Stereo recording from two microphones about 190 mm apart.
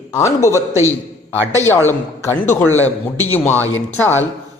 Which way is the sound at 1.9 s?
10° left (ahead or behind).